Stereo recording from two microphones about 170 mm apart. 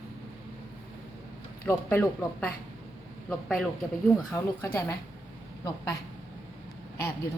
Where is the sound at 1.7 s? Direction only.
10° left (ahead or behind).